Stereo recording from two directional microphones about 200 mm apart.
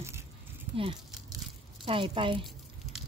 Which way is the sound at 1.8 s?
25° right (ahead or behind).